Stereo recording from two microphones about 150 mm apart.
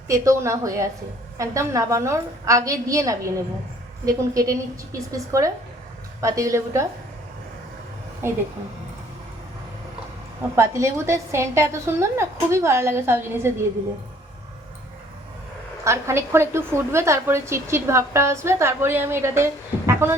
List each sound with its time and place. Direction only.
0.1 s a woman's voice: 20° right (ahead or behind)
8.2 s a woman's voice: 15° right (ahead or behind)
10.5 s a woman's voice: 20° right (ahead or behind)
15.8 s a woman's voice: 20° right (ahead or behind)